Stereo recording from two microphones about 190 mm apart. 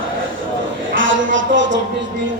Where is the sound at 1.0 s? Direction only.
80° right.